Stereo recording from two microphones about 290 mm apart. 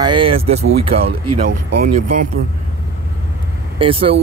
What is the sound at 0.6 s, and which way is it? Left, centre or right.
Speech, right.